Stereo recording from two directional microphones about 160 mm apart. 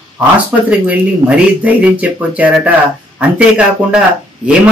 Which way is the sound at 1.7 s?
10° right (ahead or behind).